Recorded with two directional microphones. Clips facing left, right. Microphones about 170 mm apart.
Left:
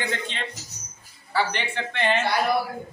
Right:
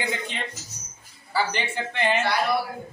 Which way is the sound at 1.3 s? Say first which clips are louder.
Even; 10° right (ahead or behind).